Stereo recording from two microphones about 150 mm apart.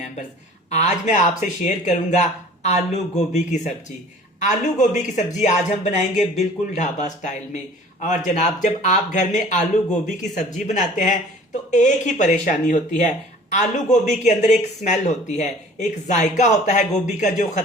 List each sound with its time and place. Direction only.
0.7 s speech: 50° left (ahead or behind)